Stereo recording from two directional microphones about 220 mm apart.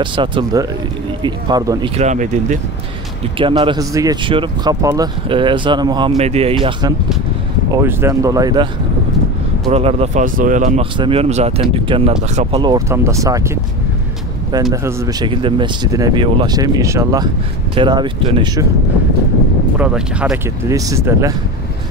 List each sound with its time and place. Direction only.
0.0 s speech: 20° right (ahead or behind)
2.0 s speech: 35° right (ahead or behind)
3.3 s speech: 25° right (ahead or behind)
7.7 s speech: 15° right (ahead or behind)
9.7 s speech: 30° right (ahead or behind)
12.7 s speech: 15° right (ahead or behind)
14.7 s speech: 15° right (ahead or behind)
19.8 s speech: 5° right (ahead or behind)